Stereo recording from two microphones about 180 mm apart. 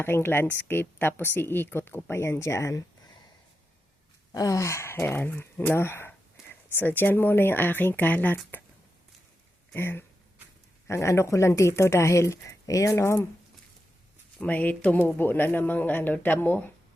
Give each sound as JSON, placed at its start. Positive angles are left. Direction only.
{"t": 0.0, "sound": "speech", "side_deg": 10}
{"t": 4.3, "sound": "speech", "side_deg": 20}
{"t": 6.4, "sound": "a sound", "side_deg": -5}
{"t": 6.7, "sound": "speech", "side_deg": 10}
{"t": 9.7, "sound": "speech", "side_deg": 15}
{"t": 14.3, "sound": "speech", "side_deg": 10}